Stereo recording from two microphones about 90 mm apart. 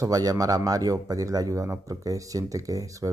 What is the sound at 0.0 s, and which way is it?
Speech, 40° right (ahead or behind).